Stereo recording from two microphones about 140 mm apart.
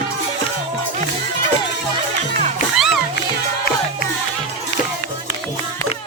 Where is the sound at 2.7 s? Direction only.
Centre (ahead or behind).